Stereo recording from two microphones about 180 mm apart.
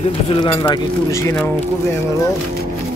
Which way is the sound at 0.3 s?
25° left (ahead or behind).